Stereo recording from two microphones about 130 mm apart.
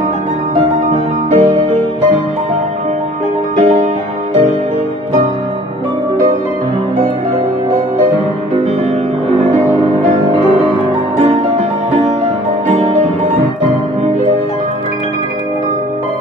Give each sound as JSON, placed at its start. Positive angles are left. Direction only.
{"t": 0.9, "sound": "music", "side_deg": -45}
{"t": 3.5, "sound": "music", "side_deg": -50}